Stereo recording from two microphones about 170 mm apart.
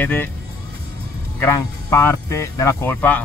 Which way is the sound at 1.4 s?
15° left (ahead or behind).